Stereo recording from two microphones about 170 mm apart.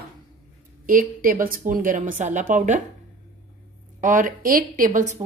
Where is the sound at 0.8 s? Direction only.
55° right (ahead or behind).